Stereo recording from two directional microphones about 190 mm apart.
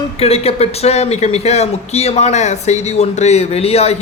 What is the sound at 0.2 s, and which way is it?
A man's voice, 30° left (ahead or behind).